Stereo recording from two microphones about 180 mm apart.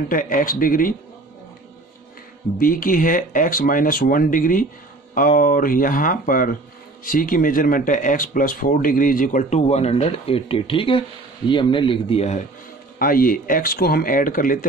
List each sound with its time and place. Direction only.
0.1 s speech: 50° left (ahead or behind)
2.6 s speech: 50° left (ahead or behind)
13.0 s speech: 50° left (ahead or behind)